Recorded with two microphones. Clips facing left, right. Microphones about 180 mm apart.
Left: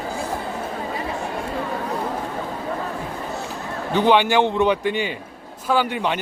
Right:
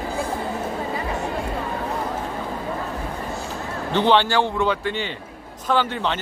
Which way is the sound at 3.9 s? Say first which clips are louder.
Left 1 dB; 10° left (ahead or behind).